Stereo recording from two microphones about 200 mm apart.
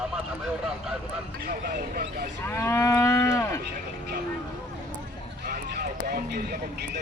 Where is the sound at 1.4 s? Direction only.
50° right (ahead or behind).